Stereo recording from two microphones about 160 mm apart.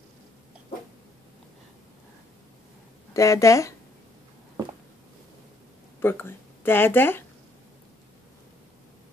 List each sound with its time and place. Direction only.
3.1 s speech: 20° left (ahead or behind)
5.9 s speech: 15° left (ahead or behind)